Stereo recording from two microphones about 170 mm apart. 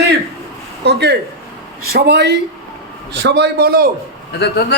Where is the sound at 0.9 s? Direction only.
80° right.